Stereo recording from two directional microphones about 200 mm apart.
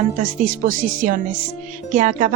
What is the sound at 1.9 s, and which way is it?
Speech, 40° right (ahead or behind).